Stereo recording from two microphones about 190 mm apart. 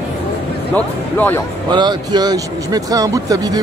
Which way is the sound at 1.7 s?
20° right (ahead or behind).